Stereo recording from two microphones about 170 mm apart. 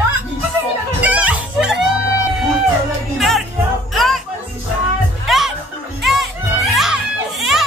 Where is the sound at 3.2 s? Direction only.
Centre (ahead or behind).